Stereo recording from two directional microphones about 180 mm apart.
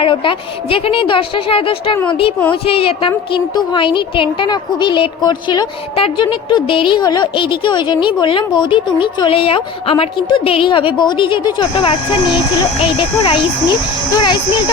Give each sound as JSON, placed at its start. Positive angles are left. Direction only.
{"t": 0.0, "sound": "a woman's voice", "side_deg": 30}